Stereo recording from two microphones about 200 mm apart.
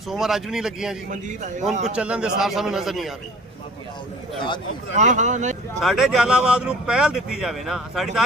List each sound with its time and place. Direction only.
0.1 s speech: centre (ahead or behind)
1.1 s speech: 40° right (ahead or behind)
2.0 s speech: 5° right (ahead or behind)
4.9 s speech: 35° right (ahead or behind)
5.8 s speech: centre (ahead or behind)